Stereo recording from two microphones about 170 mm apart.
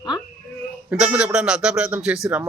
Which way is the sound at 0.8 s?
5° right (ahead or behind).